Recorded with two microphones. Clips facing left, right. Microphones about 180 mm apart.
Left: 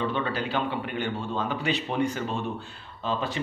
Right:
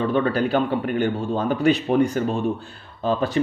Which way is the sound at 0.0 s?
45° right (ahead or behind).